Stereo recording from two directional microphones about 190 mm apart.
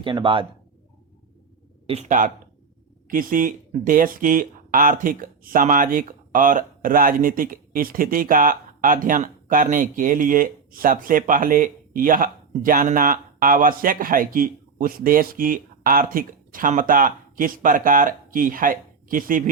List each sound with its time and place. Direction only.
0.0 s speech: 25° right (ahead or behind)
1.9 s speech: 40° right (ahead or behind)